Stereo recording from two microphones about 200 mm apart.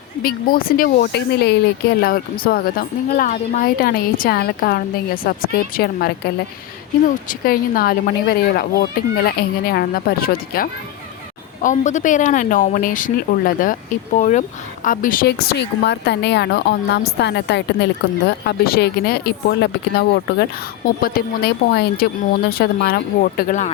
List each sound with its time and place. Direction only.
0.2 s speech: 45° left (ahead or behind)
7.3 s a woman's voice: 45° left (ahead or behind)